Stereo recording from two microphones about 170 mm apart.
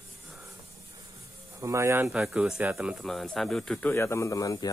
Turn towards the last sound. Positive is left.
turn(degrees=20)  # may be behind; listen again after turning